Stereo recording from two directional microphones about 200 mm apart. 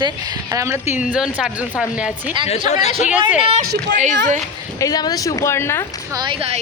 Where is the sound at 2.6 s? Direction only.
35° left (ahead or behind).